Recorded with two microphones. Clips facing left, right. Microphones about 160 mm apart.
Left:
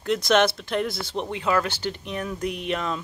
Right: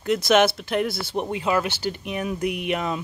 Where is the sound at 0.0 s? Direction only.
5° right (ahead or behind).